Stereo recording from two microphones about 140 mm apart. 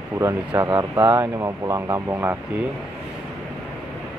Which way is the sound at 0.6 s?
25° right (ahead or behind).